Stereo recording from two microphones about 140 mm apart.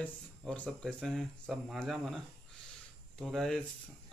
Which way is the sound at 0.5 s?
5° left (ahead or behind).